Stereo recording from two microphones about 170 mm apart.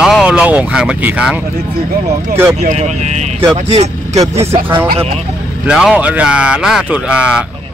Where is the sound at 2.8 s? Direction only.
40° right (ahead or behind).